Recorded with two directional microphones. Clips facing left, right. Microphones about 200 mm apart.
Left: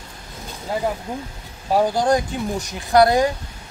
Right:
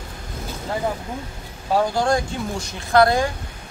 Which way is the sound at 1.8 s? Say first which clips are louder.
Left 2 dB; 15° left (ahead or behind).